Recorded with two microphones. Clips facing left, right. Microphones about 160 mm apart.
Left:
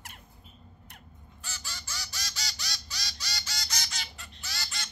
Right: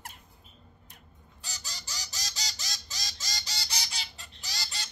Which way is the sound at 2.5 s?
45° right (ahead or behind).